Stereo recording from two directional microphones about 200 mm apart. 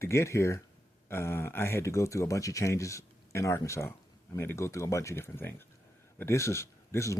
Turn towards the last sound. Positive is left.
turn(degrees=15)  # may be behind; listen again after turning